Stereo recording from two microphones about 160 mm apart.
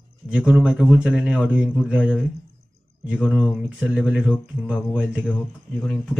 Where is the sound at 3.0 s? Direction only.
5° right (ahead or behind).